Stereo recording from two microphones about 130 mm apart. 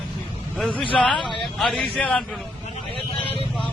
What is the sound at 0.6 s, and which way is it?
A man's voice, 5° left (ahead or behind).